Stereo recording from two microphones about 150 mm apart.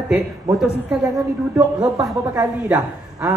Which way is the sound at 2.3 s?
20° right (ahead or behind).